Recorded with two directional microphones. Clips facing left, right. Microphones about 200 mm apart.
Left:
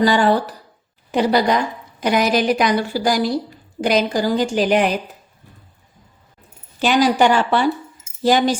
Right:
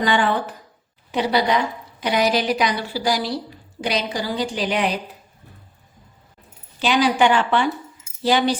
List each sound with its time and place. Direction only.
0.0 s a woman's voice: 40° left (ahead or behind)
6.7 s a woman's voice: 45° left (ahead or behind)